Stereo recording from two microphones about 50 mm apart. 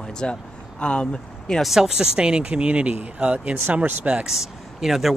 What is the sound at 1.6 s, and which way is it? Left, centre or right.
Speech, centre.